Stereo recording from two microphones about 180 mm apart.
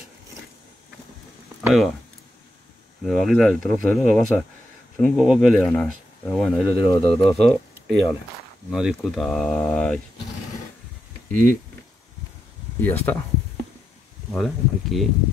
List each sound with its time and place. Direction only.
1.6 s speech: centre (ahead or behind)
3.0 s speech: centre (ahead or behind)
6.7 s speech: 30° left (ahead or behind)
7.8 s speech: centre (ahead or behind)
12.8 s speech: 10° left (ahead or behind)
14.3 s speech: centre (ahead or behind)